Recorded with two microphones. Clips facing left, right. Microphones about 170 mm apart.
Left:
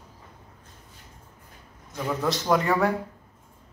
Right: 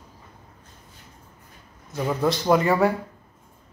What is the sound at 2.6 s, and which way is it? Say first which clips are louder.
Speech: right 3 dB; 5° right (ahead or behind).